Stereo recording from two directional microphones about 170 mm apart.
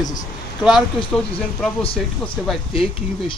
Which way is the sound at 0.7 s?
Centre (ahead or behind).